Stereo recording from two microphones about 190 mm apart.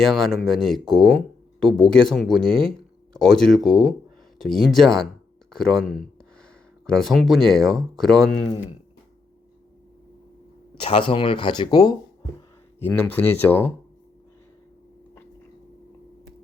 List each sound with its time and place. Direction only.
0.0 s speech: centre (ahead or behind)
10.8 s speech: 25° left (ahead or behind)
12.8 s speech: 10° left (ahead or behind)